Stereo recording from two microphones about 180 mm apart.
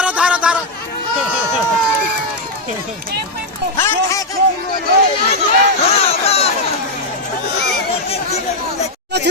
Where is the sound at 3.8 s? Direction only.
15° left (ahead or behind).